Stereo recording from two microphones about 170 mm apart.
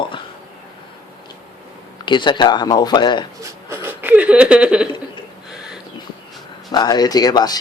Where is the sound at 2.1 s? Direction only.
25° left (ahead or behind).